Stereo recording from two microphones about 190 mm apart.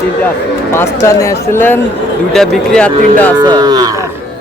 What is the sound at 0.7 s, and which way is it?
A man's voice, 15° left (ahead or behind).